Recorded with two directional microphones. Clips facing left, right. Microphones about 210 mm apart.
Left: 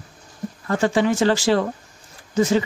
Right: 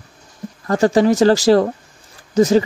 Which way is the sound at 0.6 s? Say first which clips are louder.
Right 5 dB; 40° right (ahead or behind).